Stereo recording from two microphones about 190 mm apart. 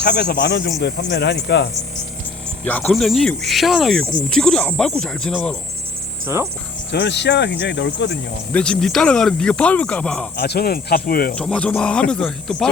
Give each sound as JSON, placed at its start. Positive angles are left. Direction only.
{"t": 0.0, "sound": "speech", "side_deg": 60}
{"t": 2.6, "sound": "speech", "side_deg": 5}
{"t": 6.2, "sound": "speech", "side_deg": -15}
{"t": 6.9, "sound": "speech", "side_deg": 60}
{"t": 8.5, "sound": "speech", "side_deg": 5}
{"t": 10.3, "sound": "speech", "side_deg": 60}
{"t": 11.3, "sound": "speech", "side_deg": 5}